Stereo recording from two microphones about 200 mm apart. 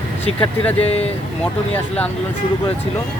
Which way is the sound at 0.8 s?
30° left (ahead or behind).